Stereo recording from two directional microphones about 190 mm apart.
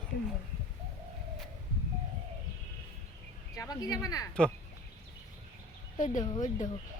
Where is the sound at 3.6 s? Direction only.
20° left (ahead or behind).